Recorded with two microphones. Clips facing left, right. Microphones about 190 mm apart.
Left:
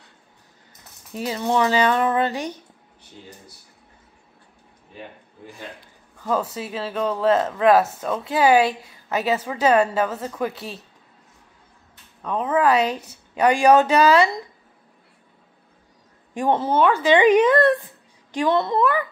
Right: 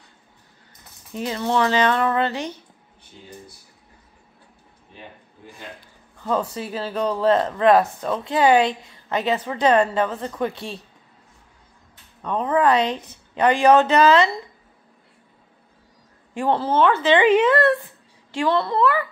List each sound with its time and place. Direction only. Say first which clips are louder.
1.3 s speech: even; 15° left (ahead or behind)
6.5 s speech: right 1 dB; centre (ahead or behind)
12.2 s speech: right 1 dB; 5° left (ahead or behind)
16.3 s a child's voice: even; 15° left (ahead or behind)